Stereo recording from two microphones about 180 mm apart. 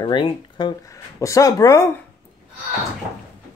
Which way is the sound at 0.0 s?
25° left (ahead or behind).